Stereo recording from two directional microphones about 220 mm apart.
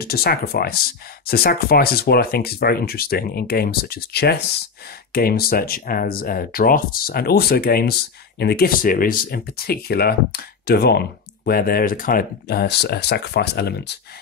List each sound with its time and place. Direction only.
0.0 s speech: 45° left (ahead or behind)